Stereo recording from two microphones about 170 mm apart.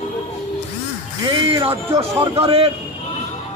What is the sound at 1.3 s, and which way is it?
Speech, 30° right (ahead or behind).